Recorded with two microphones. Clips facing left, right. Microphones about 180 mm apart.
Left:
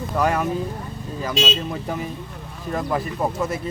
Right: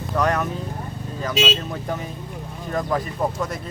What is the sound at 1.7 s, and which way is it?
Speech, 5° left (ahead or behind).